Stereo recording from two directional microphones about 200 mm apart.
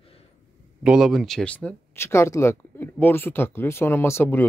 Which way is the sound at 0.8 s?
5° right (ahead or behind).